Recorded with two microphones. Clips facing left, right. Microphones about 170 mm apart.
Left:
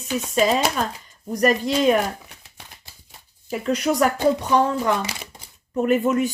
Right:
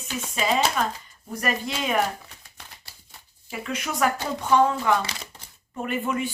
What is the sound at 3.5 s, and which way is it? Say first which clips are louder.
Speech: left 9 dB; 35° left (ahead or behind).